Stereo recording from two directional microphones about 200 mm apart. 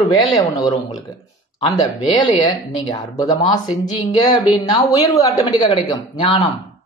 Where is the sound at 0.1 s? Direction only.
20° left (ahead or behind).